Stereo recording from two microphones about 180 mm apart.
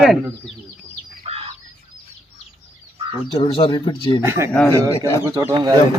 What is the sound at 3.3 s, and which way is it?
Speech, 30° left (ahead or behind).